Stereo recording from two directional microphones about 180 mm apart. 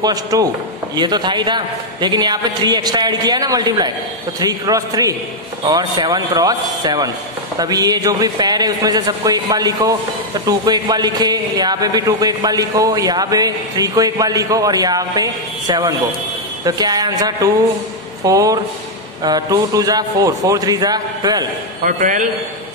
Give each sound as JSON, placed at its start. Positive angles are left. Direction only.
{"t": 0.0, "sound": "speech", "side_deg": -20}
{"t": 21.8, "sound": "a man's voice", "side_deg": -45}